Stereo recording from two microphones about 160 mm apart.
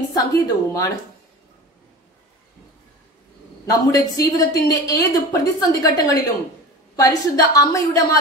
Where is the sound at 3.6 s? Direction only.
20° left (ahead or behind).